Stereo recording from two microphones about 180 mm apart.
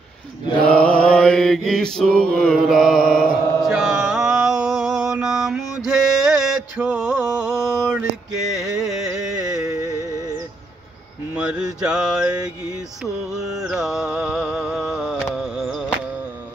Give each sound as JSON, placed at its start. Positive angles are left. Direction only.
{"t": 0.7, "sound": "mantra", "side_deg": 5}
{"t": 5.9, "sound": "a sound", "side_deg": -5}
{"t": 8.7, "sound": "carnatic music", "side_deg": 0}
{"t": 9.3, "sound": "music", "side_deg": -20}
{"t": 11.3, "sound": "mantra", "side_deg": -5}
{"t": 15.3, "sound": "a sound", "side_deg": -5}